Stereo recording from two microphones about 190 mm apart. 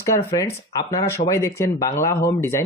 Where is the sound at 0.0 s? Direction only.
15° left (ahead or behind).